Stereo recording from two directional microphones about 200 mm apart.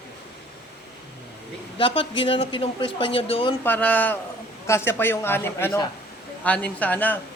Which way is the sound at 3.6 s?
10° left (ahead or behind).